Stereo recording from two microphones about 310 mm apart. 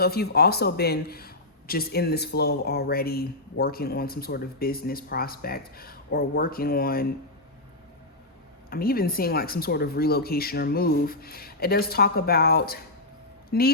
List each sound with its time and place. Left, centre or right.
0.0 s speech: left
8.7 s speech: left